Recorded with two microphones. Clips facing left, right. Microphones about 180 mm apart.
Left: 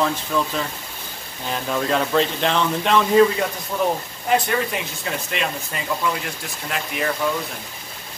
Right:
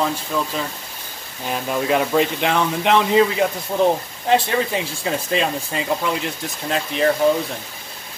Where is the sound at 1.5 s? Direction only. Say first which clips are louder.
Right 2 dB; 10° right (ahead or behind).